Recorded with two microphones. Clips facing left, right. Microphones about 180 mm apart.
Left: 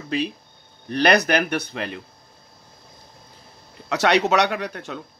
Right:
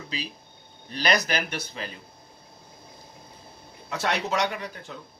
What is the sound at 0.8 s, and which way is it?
Speech, 60° left (ahead or behind).